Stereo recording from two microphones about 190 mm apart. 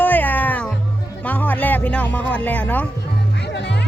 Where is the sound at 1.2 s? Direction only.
10° left (ahead or behind).